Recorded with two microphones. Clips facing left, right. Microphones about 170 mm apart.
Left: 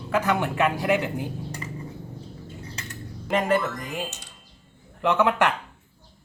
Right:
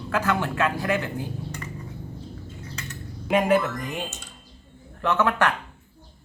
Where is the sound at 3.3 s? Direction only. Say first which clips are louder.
Right 2 dB; 5° right (ahead or behind).